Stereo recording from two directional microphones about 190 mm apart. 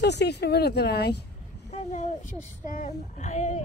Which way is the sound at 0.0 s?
60° left (ahead or behind).